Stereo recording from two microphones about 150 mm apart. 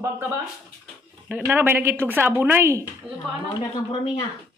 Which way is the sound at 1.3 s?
10° right (ahead or behind).